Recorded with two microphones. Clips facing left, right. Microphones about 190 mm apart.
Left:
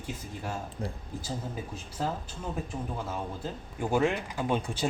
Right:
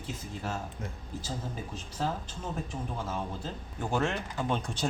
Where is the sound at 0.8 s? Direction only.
35° left (ahead or behind).